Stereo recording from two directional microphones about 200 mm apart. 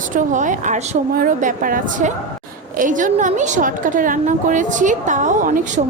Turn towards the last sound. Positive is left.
turn(degrees=-40)  # may be behind; listen again after turning